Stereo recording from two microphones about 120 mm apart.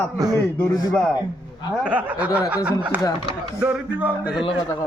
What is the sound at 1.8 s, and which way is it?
Speech, 10° right (ahead or behind).